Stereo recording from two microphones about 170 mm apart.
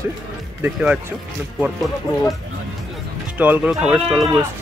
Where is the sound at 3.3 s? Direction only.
10° right (ahead or behind).